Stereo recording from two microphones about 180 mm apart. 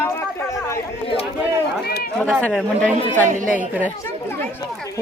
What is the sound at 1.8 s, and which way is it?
Speech, 60° left (ahead or behind).